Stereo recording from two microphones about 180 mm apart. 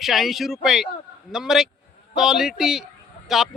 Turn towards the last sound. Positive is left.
turn(degrees=0)  # may be behind; listen again after turning